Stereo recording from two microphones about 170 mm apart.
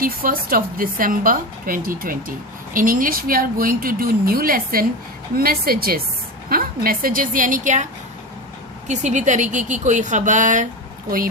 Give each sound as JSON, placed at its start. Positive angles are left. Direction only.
{"t": 0.0, "sound": "a woman's voice", "side_deg": -55}
{"t": 8.9, "sound": "speech", "side_deg": -45}